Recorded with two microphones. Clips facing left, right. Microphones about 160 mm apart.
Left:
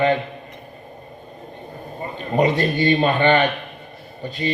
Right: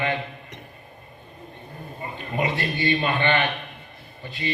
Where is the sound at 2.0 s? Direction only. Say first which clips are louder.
Left 8 dB; 35° left (ahead or behind).